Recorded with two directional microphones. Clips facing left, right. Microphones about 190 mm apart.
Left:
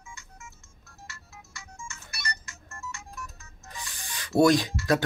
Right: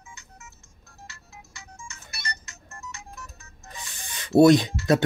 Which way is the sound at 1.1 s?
20° right (ahead or behind).